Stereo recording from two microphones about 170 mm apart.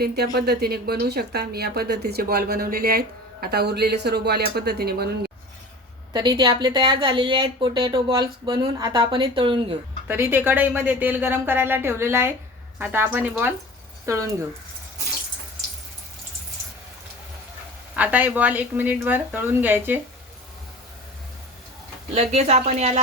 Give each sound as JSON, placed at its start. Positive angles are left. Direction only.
{"t": 0.3, "sound": "a woman's voice", "side_deg": -70}
{"t": 6.1, "sound": "speech", "side_deg": -25}
{"t": 10.1, "sound": "a woman's voice", "side_deg": -10}
{"t": 17.9, "sound": "a woman's voice", "side_deg": -10}
{"t": 22.1, "sound": "speech", "side_deg": -40}